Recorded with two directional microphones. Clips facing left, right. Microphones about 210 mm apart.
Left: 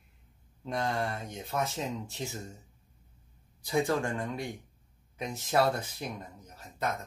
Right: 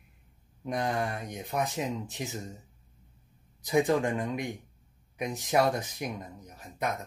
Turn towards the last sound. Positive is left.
turn(degrees=-15)  # may be behind; listen again after turning